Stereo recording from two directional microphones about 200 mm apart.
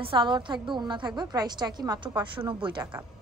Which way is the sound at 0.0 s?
25° right (ahead or behind).